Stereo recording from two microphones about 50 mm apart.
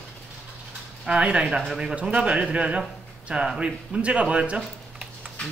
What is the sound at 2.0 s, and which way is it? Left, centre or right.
A man's voice, right.